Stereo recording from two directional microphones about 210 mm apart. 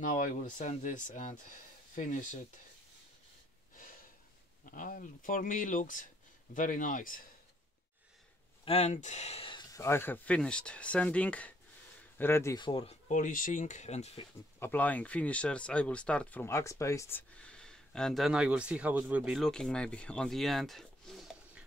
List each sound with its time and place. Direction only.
0.0 s speech: 40° left (ahead or behind)
4.6 s speech: 40° left (ahead or behind)
8.6 s speech: 30° left (ahead or behind)
13.1 s speech: 40° left (ahead or behind)
14.6 s speech: 10° left (ahead or behind)